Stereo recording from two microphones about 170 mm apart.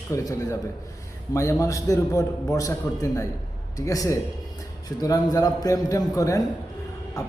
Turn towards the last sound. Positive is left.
turn(degrees=20)  # may be behind; listen again after turning